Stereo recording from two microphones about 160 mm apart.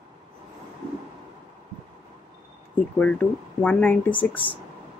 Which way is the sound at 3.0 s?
10° left (ahead or behind).